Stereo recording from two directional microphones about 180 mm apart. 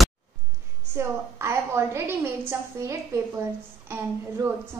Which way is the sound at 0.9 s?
15° right (ahead or behind).